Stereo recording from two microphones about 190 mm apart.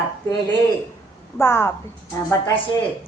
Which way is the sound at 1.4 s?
10° left (ahead or behind).